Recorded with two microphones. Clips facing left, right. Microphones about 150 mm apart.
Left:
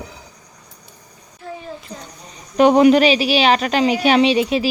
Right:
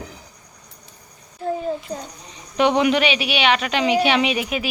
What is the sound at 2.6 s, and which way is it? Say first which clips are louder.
Speech: left 6 dB; 40° left (ahead or behind).